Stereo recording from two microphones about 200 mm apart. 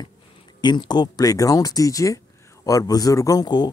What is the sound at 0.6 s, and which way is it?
Speech, 20° left (ahead or behind).